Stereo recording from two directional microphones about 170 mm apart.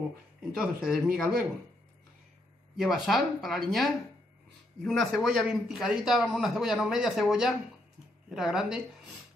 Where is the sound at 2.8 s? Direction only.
Centre (ahead or behind).